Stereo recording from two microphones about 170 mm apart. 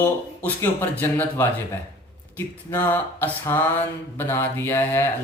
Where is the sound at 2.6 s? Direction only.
15° left (ahead or behind).